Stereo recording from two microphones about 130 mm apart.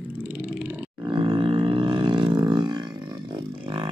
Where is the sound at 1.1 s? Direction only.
40° right (ahead or behind).